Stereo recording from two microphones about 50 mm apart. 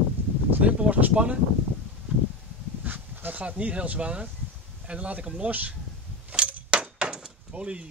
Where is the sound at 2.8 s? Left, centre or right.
Right.